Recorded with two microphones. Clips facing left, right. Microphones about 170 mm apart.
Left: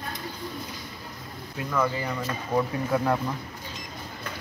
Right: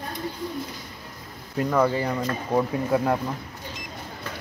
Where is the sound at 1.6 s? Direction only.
35° right (ahead or behind).